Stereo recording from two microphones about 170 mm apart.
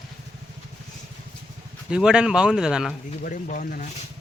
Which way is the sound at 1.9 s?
5° right (ahead or behind).